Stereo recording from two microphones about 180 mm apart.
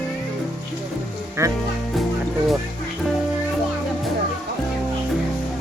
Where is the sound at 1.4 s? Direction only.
15° right (ahead or behind).